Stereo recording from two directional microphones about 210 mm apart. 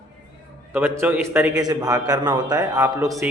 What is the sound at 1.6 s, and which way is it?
A man's voice, 20° right (ahead or behind).